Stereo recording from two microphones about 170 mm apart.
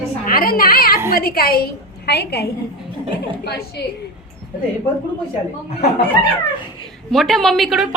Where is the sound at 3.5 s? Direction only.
70° left (ahead or behind).